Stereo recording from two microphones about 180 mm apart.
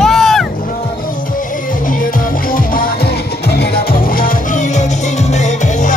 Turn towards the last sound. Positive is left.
turn(degrees=40)  # may be behind; listen again after turning